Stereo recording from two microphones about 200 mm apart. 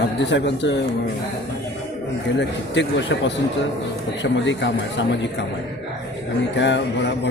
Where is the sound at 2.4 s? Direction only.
60° left (ahead or behind).